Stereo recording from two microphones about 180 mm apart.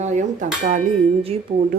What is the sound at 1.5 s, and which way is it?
Speech, 25° right (ahead or behind).